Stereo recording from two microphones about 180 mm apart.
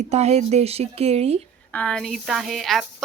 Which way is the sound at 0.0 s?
35° right (ahead or behind).